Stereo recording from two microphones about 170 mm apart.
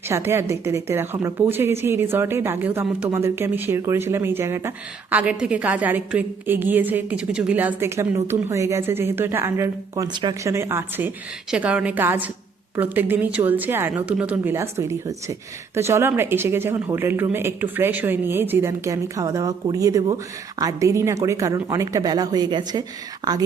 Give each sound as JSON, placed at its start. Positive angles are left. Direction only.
{"t": 0.1, "sound": "a woman's voice", "side_deg": -15}